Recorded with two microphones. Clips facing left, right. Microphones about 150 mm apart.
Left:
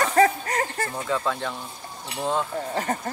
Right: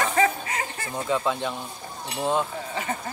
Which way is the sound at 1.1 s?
15° right (ahead or behind).